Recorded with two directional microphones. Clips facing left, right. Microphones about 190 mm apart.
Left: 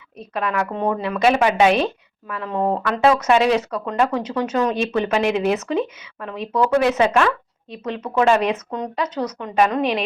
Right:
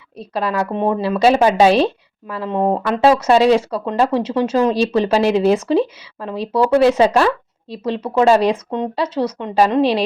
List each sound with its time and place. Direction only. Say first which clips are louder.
0.2 s speech: right 3 dB; 30° right (ahead or behind)